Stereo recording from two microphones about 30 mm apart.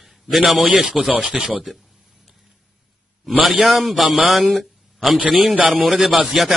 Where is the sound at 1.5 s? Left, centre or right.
Centre.